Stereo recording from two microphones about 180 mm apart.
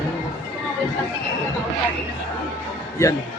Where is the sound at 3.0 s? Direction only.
15° left (ahead or behind).